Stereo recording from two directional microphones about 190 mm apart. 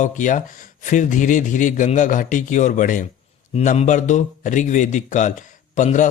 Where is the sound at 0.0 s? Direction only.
40° left (ahead or behind).